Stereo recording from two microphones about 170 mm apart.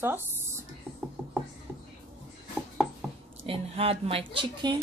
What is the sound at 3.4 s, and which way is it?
A woman's voice, 35° right (ahead or behind).